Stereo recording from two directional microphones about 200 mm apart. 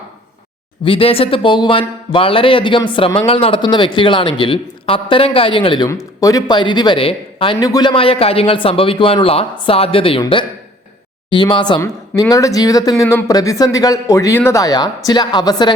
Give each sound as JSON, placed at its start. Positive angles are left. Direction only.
{"t": 0.9, "sound": "speech", "side_deg": 25}